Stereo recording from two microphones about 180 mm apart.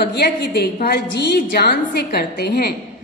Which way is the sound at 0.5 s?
55° left (ahead or behind).